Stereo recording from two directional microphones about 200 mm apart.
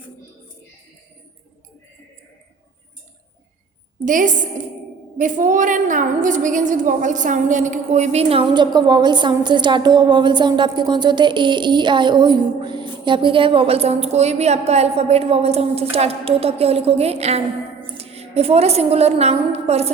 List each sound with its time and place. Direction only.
4.0 s a woman's voice: 40° right (ahead or behind)